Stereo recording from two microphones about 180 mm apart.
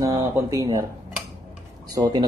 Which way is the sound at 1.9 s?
20° right (ahead or behind).